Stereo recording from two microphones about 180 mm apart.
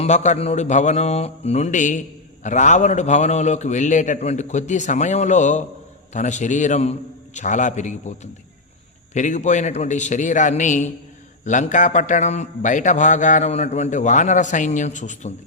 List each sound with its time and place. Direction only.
0.0 s a man's voice: 40° left (ahead or behind)